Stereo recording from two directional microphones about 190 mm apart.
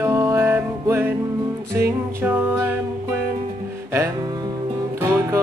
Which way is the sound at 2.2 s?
10° right (ahead or behind).